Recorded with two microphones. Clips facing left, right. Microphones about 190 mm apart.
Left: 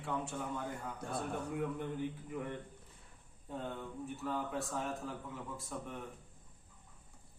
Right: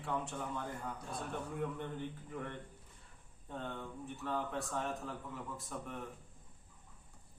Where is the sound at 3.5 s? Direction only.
10° left (ahead or behind).